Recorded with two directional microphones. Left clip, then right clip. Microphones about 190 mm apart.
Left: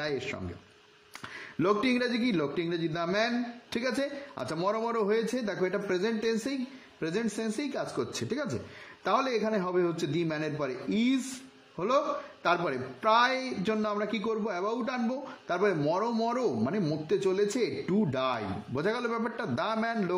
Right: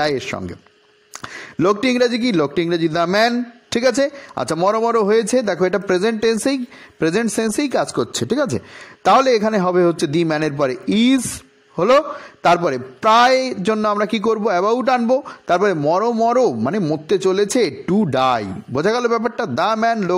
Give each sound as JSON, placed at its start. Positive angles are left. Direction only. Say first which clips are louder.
{"t": 0.0, "sound": "a man's voice", "louder": "right 13 dB", "side_deg": -40}